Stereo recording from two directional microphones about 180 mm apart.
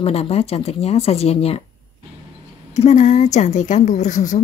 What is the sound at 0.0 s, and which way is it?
A woman's voice, 35° left (ahead or behind).